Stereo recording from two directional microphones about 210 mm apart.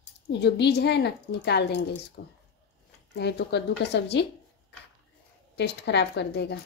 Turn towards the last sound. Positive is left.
turn(degrees=55)  # may be behind; listen again after turning